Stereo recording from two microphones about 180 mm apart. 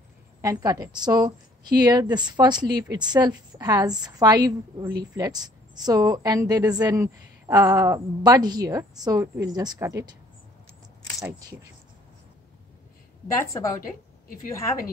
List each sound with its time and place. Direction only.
0.4 s a woman's voice: 20° right (ahead or behind)
13.4 s a woman's voice: 20° left (ahead or behind)